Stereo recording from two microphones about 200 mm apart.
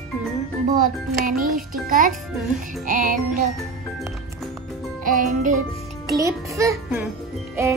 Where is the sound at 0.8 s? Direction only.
45° right (ahead or behind).